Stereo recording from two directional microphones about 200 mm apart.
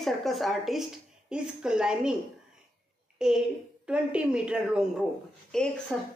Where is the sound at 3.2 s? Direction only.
5° right (ahead or behind).